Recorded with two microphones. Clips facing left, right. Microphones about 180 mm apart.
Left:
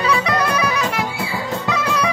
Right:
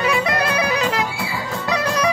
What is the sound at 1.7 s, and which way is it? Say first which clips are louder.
Music: right 1 dB; 35° right (ahead or behind).